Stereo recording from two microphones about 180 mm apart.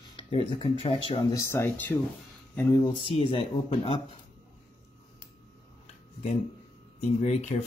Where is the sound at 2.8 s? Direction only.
30° left (ahead or behind).